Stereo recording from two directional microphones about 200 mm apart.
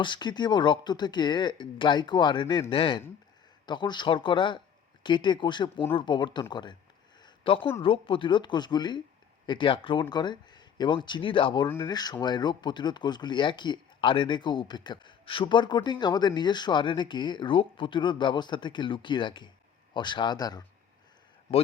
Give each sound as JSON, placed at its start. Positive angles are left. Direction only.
{"t": 0.0, "sound": "speech", "side_deg": 20}
{"t": 7.2, "sound": "a sound", "side_deg": 25}
{"t": 7.8, "sound": "speech", "side_deg": 25}